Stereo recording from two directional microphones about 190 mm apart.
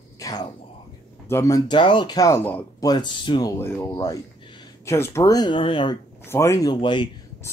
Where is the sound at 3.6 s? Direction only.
10° left (ahead or behind).